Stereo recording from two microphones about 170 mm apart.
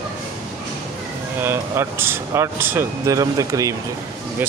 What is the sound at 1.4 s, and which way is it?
Speech, 15° right (ahead or behind).